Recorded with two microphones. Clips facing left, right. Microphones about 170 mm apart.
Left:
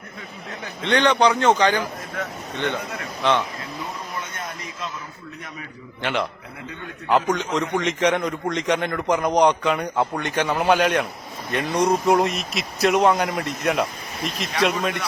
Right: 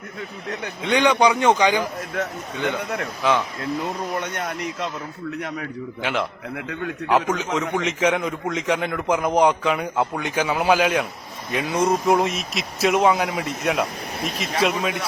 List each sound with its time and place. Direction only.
0.8 s a man's voice: 10° right (ahead or behind)
3.2 s a man's voice: 5° right (ahead or behind)
4.2 s speech: 70° right (ahead or behind)
6.0 s a man's voice: centre (ahead or behind)